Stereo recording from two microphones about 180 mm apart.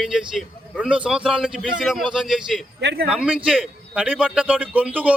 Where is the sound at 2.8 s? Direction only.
75° right (ahead or behind).